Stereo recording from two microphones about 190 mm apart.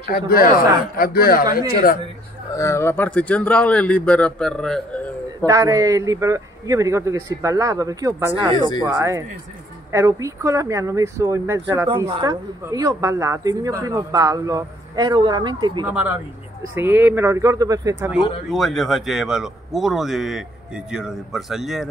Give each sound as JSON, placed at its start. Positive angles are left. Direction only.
{"t": 0.0, "sound": "a man's voice", "side_deg": 50}
{"t": 2.5, "sound": "a man's voice", "side_deg": 15}
{"t": 5.5, "sound": "speech", "side_deg": -15}
{"t": 15.9, "sound": "speech", "side_deg": -5}
{"t": 18.1, "sound": "speech", "side_deg": 0}